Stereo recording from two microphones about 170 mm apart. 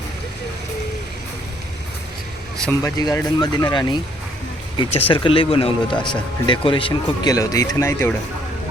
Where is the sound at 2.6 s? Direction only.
20° left (ahead or behind).